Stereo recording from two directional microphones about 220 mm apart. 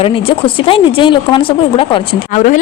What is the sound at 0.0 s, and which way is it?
Speech, 25° left (ahead or behind).